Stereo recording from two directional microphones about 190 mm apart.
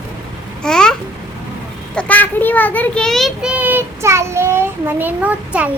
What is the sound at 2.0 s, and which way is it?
A child's voice, 10° left (ahead or behind).